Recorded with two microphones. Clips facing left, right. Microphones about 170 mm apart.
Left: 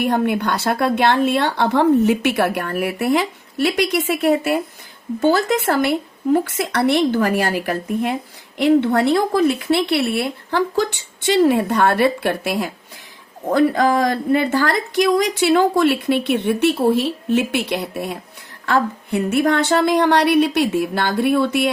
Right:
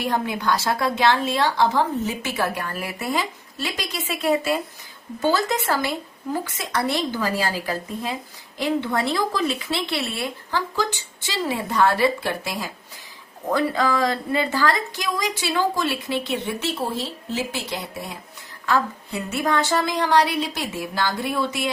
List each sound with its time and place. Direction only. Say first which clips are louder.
0.0 s speech: left 6 dB; 55° left (ahead or behind)
14.3 s speech: left 2 dB; 55° left (ahead or behind)